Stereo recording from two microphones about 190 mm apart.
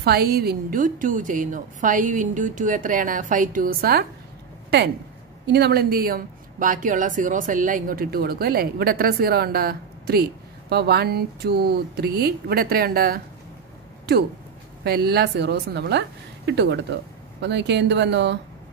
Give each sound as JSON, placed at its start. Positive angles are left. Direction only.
{"t": 0.0, "sound": "speech", "side_deg": -55}
{"t": 4.6, "sound": "a woman's voice", "side_deg": -60}
{"t": 14.8, "sound": "a woman's voice", "side_deg": -60}